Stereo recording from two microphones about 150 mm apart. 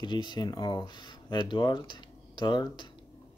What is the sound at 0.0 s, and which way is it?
Speech, 30° left (ahead or behind).